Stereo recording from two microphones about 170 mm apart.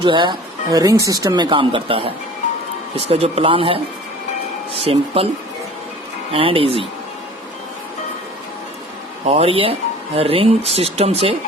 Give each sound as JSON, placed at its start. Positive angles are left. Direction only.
{"t": 0.0, "sound": "speech", "side_deg": -25}
{"t": 4.9, "sound": "speech", "side_deg": -35}
{"t": 6.3, "sound": "speech", "side_deg": -30}
{"t": 9.2, "sound": "speech", "side_deg": -35}